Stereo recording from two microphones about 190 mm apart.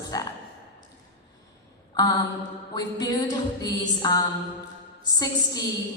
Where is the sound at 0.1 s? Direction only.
20° left (ahead or behind).